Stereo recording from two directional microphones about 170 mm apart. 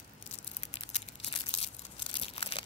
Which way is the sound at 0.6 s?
35° left (ahead or behind).